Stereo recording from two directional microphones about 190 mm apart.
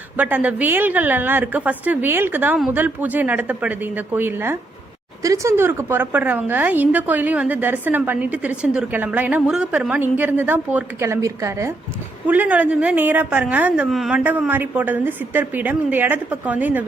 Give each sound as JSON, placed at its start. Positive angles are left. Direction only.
{"t": 0.2, "sound": "a woman's voice", "side_deg": -10}